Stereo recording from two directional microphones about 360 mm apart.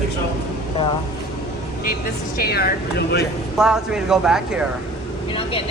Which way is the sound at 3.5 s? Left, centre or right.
Centre.